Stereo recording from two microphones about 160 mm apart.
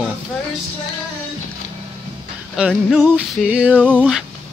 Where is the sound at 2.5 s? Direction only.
5° right (ahead or behind).